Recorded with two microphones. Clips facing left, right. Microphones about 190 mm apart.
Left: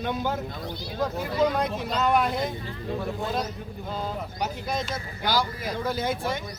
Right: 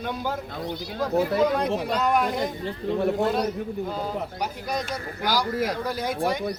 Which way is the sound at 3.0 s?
70° right (ahead or behind).